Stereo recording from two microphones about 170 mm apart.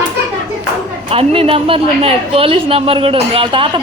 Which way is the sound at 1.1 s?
35° right (ahead or behind).